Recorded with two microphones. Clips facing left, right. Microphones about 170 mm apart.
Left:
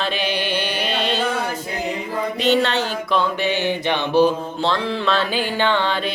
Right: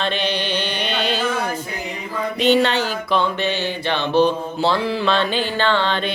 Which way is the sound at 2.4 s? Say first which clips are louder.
Right 2 dB; centre (ahead or behind).